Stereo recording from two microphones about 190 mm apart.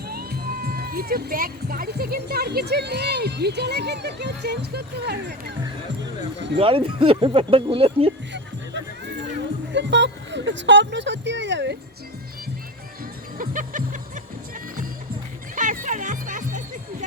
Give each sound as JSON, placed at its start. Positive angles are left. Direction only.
{"t": 0.1, "sound": "speech", "side_deg": -50}
{"t": 6.6, "sound": "speech", "side_deg": -30}
{"t": 9.7, "sound": "speech", "side_deg": -70}
{"t": 13.4, "sound": "music", "side_deg": -45}
{"t": 15.5, "sound": "music", "side_deg": -45}